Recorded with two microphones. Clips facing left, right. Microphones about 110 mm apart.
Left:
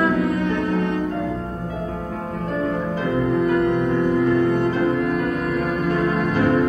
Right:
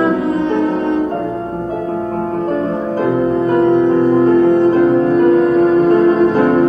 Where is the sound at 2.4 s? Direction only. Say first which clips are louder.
Right 6 dB; 40° right (ahead or behind).